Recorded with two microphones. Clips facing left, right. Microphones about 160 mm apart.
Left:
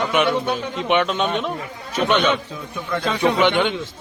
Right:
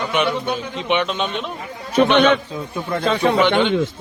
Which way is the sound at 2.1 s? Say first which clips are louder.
Right 5 dB; 55° right (ahead or behind).